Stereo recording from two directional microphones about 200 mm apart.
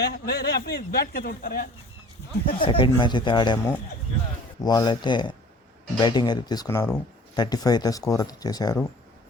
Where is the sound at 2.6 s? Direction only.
25° left (ahead or behind).